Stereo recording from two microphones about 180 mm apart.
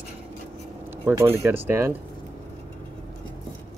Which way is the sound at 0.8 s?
10° right (ahead or behind).